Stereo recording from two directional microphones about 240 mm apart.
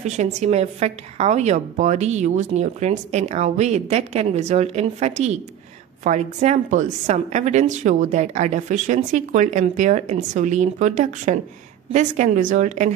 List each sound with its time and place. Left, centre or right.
0.0 s a woman's voice: right